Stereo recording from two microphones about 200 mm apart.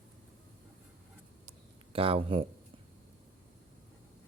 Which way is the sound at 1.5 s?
25° right (ahead or behind).